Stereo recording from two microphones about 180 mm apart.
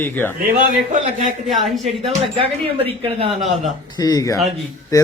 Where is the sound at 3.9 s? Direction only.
20° left (ahead or behind).